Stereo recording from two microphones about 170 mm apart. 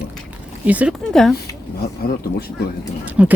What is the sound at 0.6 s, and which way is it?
Speech, 10° right (ahead or behind).